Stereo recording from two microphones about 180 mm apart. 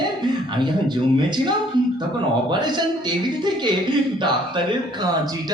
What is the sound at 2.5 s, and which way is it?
A man's voice, 25° right (ahead or behind).